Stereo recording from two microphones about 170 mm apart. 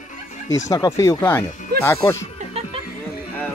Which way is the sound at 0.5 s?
20° left (ahead or behind).